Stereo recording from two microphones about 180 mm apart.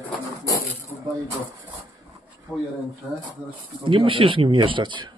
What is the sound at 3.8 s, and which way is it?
Speech, 30° right (ahead or behind).